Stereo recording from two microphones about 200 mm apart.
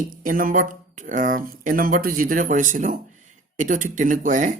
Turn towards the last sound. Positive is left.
turn(degrees=-40)  # may be behind; listen again after turning